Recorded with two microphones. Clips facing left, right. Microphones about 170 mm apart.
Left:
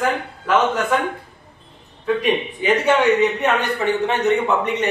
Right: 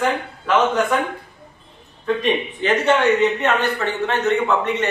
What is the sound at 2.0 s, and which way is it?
A man's voice, 10° left (ahead or behind).